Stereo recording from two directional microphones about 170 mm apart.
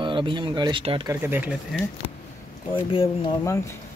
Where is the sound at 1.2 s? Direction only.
10° right (ahead or behind).